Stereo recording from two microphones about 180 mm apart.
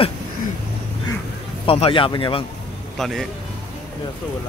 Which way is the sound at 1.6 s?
30° left (ahead or behind).